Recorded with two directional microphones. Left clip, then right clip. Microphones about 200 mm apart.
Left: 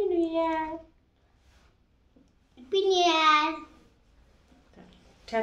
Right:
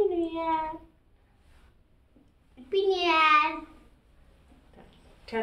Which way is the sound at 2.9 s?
15° left (ahead or behind).